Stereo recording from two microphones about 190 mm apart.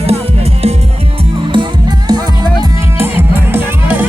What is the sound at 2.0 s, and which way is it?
Music, 20° right (ahead or behind).